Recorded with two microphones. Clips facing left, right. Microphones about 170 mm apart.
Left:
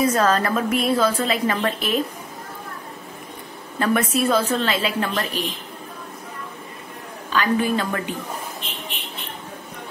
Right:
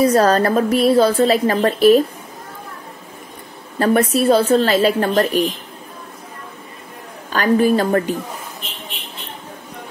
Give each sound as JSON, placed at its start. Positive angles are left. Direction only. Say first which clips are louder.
{"t": 0.0, "sound": "a woman's voice", "louder": "right 5 dB", "side_deg": -35}
{"t": 3.8, "sound": "a woman's voice", "louder": "right 5 dB", "side_deg": -35}
{"t": 7.2, "sound": "a woman's voice", "louder": "right 6 dB", "side_deg": -45}